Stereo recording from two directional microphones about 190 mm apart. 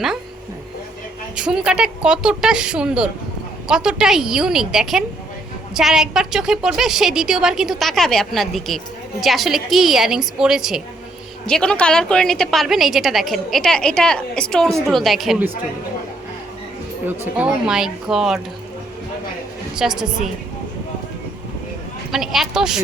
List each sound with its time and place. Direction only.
1.4 s a woman's voice: 5° right (ahead or behind)
17.1 s a woman's voice: 5° right (ahead or behind)
19.7 s a woman's voice: 5° right (ahead or behind)
22.1 s a woman's voice: centre (ahead or behind)